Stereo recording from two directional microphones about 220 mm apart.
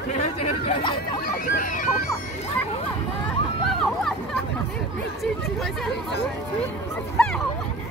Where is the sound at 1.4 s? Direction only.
35° left (ahead or behind).